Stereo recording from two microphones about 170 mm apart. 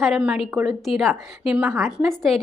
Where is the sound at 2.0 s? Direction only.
Centre (ahead or behind).